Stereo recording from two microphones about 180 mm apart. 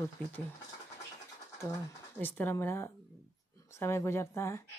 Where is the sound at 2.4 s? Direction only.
10° left (ahead or behind).